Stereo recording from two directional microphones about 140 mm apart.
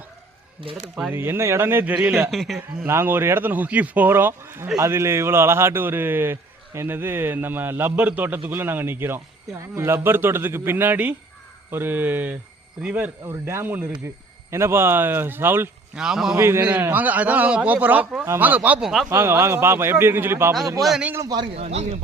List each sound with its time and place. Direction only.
0.6 s speech: 40° right (ahead or behind)
1.1 s speech: 15° right (ahead or behind)
2.3 s speech: centre (ahead or behind)
2.6 s speech: 15° right (ahead or behind)
16.0 s speech: 5° right (ahead or behind)
16.4 s speech: 15° right (ahead or behind)
19.1 s speech: 20° right (ahead or behind)
20.8 s speech: centre (ahead or behind)
21.1 s a man's voice: 25° right (ahead or behind)
21.5 s speech: 45° right (ahead or behind)